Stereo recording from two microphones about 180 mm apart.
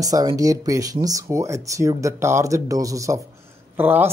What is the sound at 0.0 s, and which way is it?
Speech, 20° right (ahead or behind).